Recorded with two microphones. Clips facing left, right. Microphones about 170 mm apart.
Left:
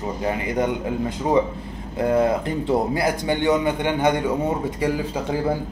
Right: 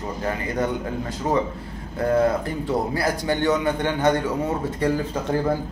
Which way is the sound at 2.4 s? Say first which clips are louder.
Left 3 dB; 20° left (ahead or behind).